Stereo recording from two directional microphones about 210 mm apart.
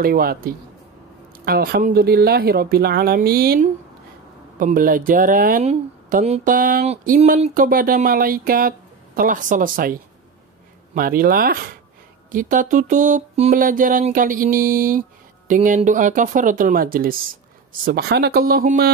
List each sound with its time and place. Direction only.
0.0 s speech: 45° right (ahead or behind)
11.0 s speech: 45° right (ahead or behind)